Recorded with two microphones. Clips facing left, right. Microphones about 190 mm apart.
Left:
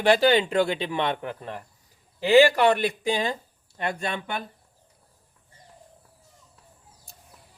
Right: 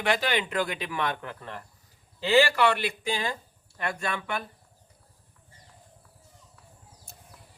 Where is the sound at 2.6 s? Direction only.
40° left (ahead or behind).